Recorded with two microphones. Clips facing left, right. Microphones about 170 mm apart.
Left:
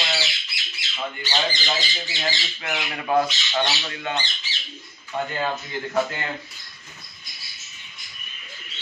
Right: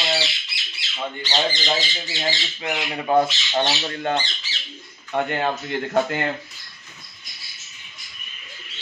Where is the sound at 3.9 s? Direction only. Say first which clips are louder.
Right 5 dB; 45° right (ahead or behind).